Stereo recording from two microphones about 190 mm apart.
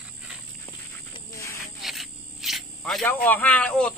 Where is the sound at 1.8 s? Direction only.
Centre (ahead or behind).